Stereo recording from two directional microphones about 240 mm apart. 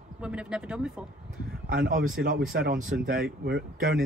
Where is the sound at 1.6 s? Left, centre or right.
Right.